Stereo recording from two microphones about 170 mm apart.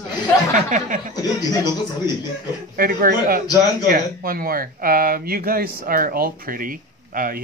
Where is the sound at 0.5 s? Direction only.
50° right (ahead or behind).